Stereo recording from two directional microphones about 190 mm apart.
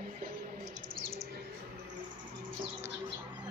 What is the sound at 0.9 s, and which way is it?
Bird, 50° right (ahead or behind).